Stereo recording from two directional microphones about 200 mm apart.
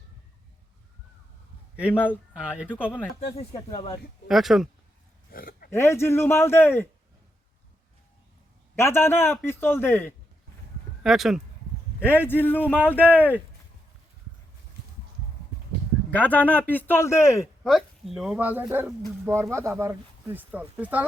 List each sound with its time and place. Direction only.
1.9 s a man's voice: 10° left (ahead or behind)
2.7 s speech: 5° right (ahead or behind)
3.2 s speech: 30° left (ahead or behind)
4.3 s speech: centre (ahead or behind)
5.3 s oink: 45° left (ahead or behind)
5.7 s a man's voice: 10° left (ahead or behind)
8.7 s a man's voice: 10° left (ahead or behind)
11.0 s speech: centre (ahead or behind)
12.0 s a man's voice: 10° left (ahead or behind)
16.0 s a man's voice: 10° left (ahead or behind)
17.6 s speech: centre (ahead or behind)